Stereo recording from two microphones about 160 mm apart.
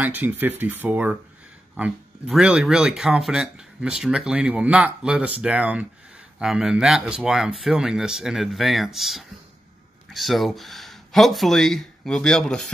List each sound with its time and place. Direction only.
0.0 s speech: 10° right (ahead or behind)